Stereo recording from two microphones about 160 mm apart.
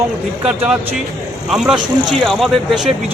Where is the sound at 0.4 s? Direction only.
10° right (ahead or behind).